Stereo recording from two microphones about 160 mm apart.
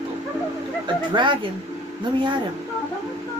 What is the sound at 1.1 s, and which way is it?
Speech, 30° right (ahead or behind).